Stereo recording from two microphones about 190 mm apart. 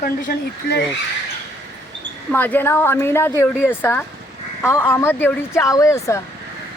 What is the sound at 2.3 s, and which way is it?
A woman's voice, 10° left (ahead or behind).